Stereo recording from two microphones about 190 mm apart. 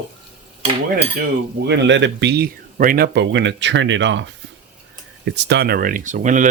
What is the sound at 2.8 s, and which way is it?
Speech, 50° right (ahead or behind).